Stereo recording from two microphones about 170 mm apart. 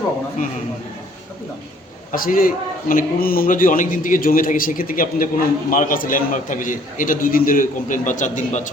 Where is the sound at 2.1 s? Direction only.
55° left (ahead or behind).